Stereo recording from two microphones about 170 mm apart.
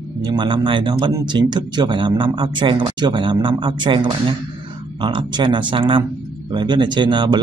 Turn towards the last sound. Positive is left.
turn(degrees=-25)  # may be behind; listen again after turning